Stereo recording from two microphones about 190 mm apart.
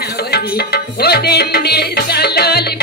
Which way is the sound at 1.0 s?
60° left (ahead or behind).